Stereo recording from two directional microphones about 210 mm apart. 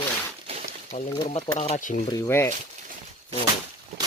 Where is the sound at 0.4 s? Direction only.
30° right (ahead or behind).